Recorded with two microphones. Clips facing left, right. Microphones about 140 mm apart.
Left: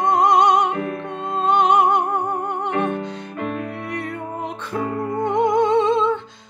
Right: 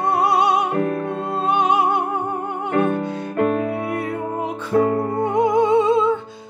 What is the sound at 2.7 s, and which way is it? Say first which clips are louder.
Music: right 8 dB; 45° right (ahead or behind).